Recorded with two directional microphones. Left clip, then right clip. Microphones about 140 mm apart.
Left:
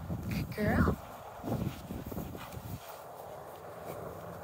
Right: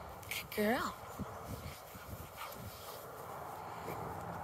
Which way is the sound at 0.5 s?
15° right (ahead or behind).